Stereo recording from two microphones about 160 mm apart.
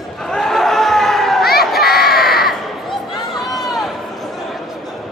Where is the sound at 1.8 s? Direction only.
75° left (ahead or behind).